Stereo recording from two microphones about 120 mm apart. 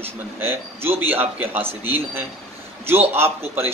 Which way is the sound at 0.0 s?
20° right (ahead or behind).